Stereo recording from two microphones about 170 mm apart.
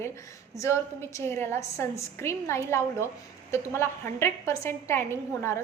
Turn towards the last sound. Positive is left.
turn(degrees=15)  # may be behind; listen again after turning